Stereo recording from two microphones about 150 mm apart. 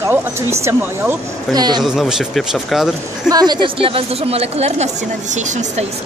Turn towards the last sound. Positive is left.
turn(degrees=-50)  # may be behind; listen again after turning